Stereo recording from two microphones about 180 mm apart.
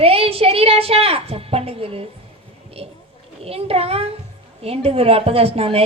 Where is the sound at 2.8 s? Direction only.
35° right (ahead or behind).